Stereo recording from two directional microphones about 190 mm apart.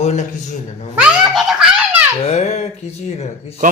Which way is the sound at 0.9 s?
5° right (ahead or behind).